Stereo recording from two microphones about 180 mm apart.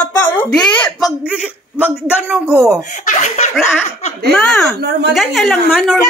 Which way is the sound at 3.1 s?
40° left (ahead or behind).